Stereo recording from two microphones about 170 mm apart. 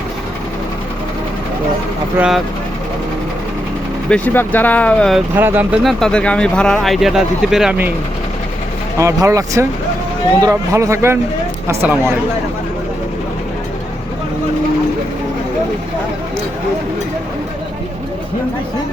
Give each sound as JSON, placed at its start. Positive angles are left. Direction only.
{"t": 2.1, "sound": "speech", "side_deg": -5}
{"t": 4.1, "sound": "speech", "side_deg": 10}
{"t": 5.3, "sound": "speech", "side_deg": -10}
{"t": 9.0, "sound": "a man's voice", "side_deg": -15}